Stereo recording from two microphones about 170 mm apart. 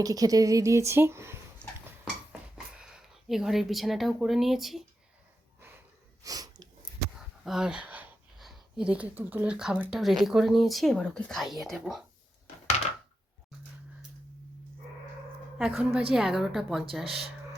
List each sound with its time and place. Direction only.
0.0 s speech: 20° right (ahead or behind)
2.7 s speech: 5° right (ahead or behind)
5.5 s snort: 10° right (ahead or behind)
6.2 s sneeze: 20° right (ahead or behind)
7.4 s speech: 5° right (ahead or behind)
15.5 s a woman's voice: 5° right (ahead or behind)